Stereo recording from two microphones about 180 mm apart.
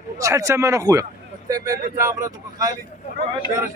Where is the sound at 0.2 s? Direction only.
15° right (ahead or behind).